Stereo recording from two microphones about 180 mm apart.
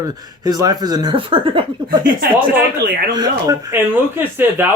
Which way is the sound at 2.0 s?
50° right (ahead or behind).